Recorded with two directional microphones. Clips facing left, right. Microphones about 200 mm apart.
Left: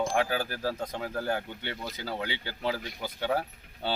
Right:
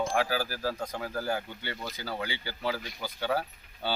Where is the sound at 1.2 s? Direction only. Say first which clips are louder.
Left 1 dB; 25° left (ahead or behind).